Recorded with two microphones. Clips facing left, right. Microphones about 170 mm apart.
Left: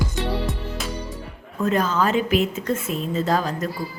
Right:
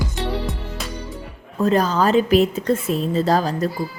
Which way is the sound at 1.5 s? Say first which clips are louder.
Right 3 dB; 35° right (ahead or behind).